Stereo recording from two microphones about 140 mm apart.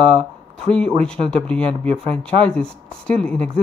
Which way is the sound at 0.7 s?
5° left (ahead or behind).